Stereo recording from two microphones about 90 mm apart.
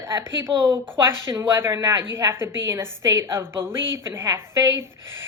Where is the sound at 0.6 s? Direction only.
35° right (ahead or behind).